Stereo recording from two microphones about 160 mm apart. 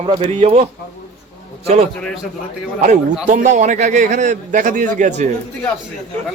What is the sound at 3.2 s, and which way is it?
A man's voice, 50° right (ahead or behind).